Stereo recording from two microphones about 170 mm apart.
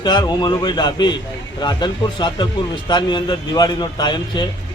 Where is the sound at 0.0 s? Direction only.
25° left (ahead or behind).